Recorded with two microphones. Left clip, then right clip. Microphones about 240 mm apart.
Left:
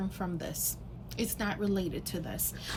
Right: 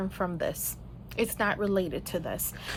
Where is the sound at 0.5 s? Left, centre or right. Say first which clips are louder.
Left 1 dB; centre.